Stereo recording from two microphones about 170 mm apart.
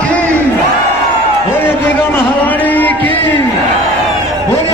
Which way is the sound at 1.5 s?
10° left (ahead or behind).